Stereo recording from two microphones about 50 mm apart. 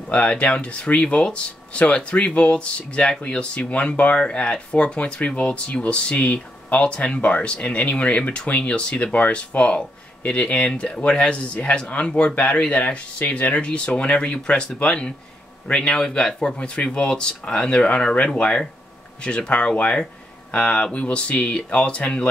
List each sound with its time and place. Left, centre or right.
0.1 s speech: left
8.2 s speech: centre